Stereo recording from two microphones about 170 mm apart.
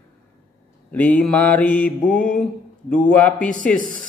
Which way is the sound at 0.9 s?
10° left (ahead or behind).